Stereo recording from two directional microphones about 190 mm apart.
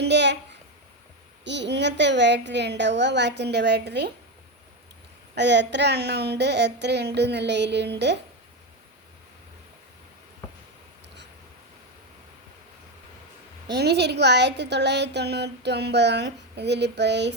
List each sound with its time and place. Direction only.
0.0 s a sound: 65° right (ahead or behind)
1.5 s a woman's voice: 65° right (ahead or behind)
5.3 s speech: 65° right (ahead or behind)
13.7 s speech: 60° right (ahead or behind)